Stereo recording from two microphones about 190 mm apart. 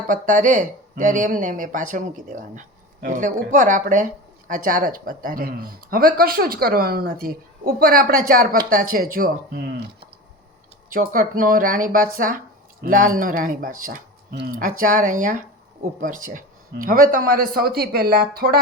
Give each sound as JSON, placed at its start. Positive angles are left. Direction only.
{"t": 0.1, "sound": "speech", "side_deg": -40}
{"t": 10.9, "sound": "speech", "side_deg": -45}